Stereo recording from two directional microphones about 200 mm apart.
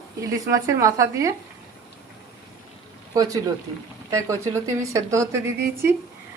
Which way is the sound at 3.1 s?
20° right (ahead or behind).